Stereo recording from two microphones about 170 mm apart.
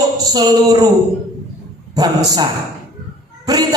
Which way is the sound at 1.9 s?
20° right (ahead or behind).